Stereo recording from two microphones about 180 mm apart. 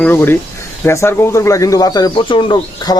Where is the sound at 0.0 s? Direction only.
10° left (ahead or behind).